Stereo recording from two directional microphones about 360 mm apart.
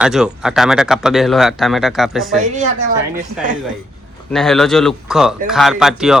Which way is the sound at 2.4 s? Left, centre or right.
Centre.